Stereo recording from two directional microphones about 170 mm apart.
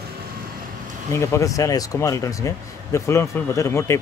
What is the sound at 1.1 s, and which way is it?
Speech, 15° left (ahead or behind).